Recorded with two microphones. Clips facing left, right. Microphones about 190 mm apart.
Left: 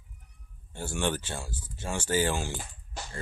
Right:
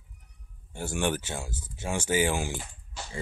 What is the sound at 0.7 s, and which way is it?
Speech, 15° right (ahead or behind).